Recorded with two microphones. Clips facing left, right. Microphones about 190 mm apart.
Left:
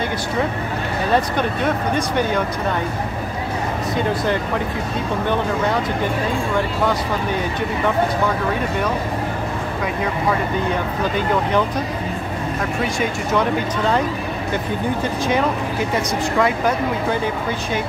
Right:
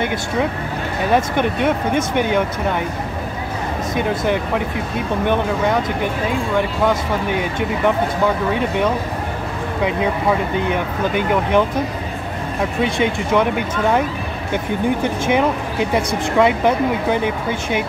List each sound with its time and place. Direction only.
1.1 s speech: 15° right (ahead or behind)
5.2 s speech: 15° right (ahead or behind)
6.9 s speech: 20° right (ahead or behind)
10.5 s speech: 20° right (ahead or behind)
13.3 s speech: 15° right (ahead or behind)
15.2 s speech: 20° right (ahead or behind)